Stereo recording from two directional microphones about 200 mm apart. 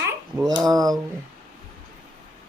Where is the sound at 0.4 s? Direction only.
20° right (ahead or behind).